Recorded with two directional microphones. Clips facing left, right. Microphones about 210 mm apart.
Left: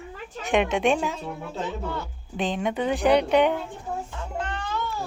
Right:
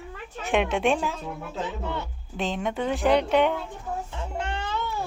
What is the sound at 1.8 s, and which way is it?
Speech, 25° right (ahead or behind).